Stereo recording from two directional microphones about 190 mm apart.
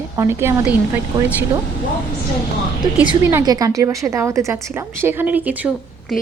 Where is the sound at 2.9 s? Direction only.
10° right (ahead or behind).